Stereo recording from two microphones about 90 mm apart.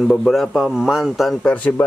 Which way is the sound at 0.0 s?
Centre (ahead or behind).